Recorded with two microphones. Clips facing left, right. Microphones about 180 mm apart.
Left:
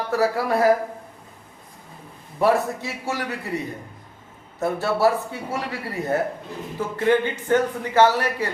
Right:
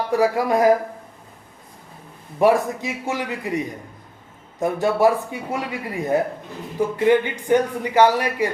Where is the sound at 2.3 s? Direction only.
15° right (ahead or behind).